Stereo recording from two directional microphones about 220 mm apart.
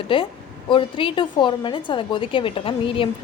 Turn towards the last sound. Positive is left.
turn(degrees=25)  # may be behind; listen again after turning